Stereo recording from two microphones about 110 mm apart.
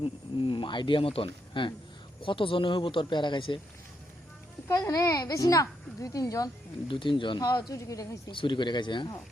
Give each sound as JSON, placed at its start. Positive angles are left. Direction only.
{"t": 0.3, "sound": "speech", "side_deg": 50}
{"t": 4.7, "sound": "a woman's voice", "side_deg": 30}
{"t": 6.8, "sound": "a woman's voice", "side_deg": 50}
{"t": 8.3, "sound": "speech", "side_deg": 50}